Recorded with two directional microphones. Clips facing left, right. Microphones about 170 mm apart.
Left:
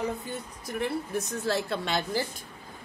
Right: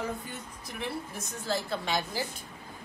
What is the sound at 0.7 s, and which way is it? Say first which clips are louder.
Speech: left 7 dB; 55° left (ahead or behind).